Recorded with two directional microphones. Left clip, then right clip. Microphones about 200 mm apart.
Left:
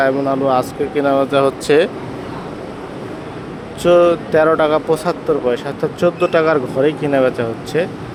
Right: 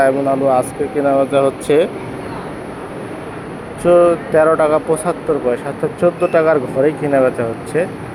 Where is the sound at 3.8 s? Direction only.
50° left (ahead or behind).